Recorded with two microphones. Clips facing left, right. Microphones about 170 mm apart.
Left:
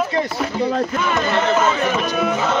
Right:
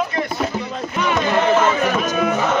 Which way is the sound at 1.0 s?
Centre (ahead or behind).